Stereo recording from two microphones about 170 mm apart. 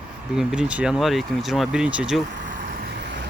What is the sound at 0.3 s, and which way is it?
Speech, 5° right (ahead or behind).